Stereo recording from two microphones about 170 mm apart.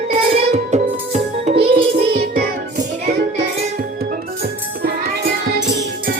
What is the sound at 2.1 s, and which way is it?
Music, 65° right (ahead or behind).